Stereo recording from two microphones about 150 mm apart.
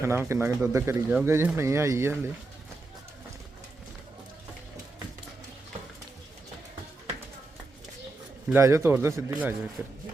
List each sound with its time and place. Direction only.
0.0 s speech: 15° right (ahead or behind)
8.5 s speech: 20° right (ahead or behind)